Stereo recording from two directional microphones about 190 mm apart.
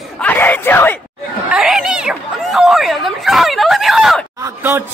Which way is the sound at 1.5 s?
Centre (ahead or behind).